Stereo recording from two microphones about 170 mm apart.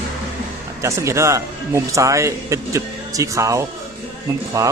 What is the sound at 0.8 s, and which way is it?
A man's voice, 15° right (ahead or behind).